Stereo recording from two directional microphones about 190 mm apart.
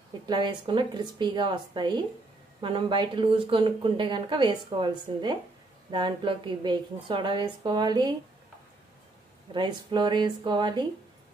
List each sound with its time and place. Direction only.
0.3 s speech: 25° right (ahead or behind)
9.5 s speech: 25° right (ahead or behind)